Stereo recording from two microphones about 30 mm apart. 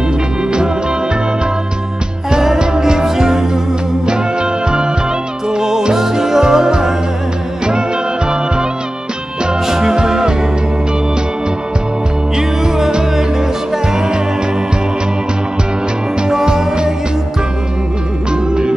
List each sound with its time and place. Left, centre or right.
2.3 s music: centre
4.0 s music: right
5.5 s music: centre
9.7 s music: centre
12.4 s music: centre
13.9 s music: centre
16.3 s music: centre
18.3 s music: right